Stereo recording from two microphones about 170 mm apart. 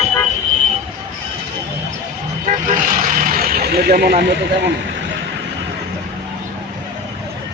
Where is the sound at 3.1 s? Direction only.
55° right (ahead or behind); by 4.7 s 75° right (ahead or behind).